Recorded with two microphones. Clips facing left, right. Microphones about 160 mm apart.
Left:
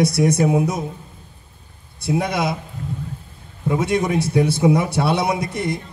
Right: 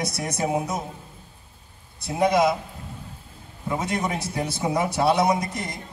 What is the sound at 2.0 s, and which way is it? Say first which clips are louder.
Speech: right 1 dB; 65° left (ahead or behind).